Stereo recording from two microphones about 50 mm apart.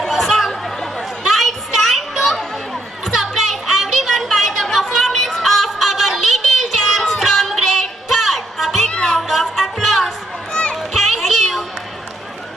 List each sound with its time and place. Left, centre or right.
0.0 s chatter: centre
7.8 s music: centre
8.8 s music: centre
10.5 s children playing: left
10.8 s music: centre